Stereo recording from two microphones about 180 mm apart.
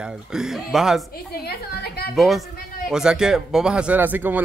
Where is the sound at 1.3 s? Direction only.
60° left (ahead or behind).